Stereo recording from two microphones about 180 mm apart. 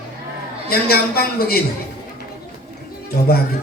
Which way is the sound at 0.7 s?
60° left (ahead or behind).